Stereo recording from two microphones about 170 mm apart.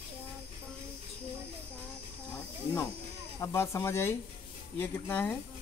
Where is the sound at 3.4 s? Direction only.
15° left (ahead or behind).